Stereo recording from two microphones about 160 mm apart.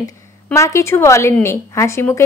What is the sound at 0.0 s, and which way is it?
A woman's voice, 20° left (ahead or behind).